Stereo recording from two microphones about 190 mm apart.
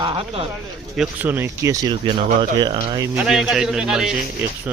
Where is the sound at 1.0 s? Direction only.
10° right (ahead or behind).